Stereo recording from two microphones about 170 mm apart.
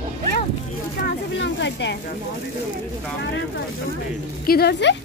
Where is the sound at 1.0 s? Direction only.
90° left.